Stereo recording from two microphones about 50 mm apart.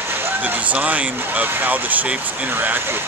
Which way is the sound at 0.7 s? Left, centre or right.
Right.